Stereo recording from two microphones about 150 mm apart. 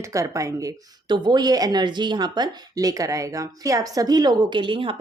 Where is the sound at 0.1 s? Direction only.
20° right (ahead or behind).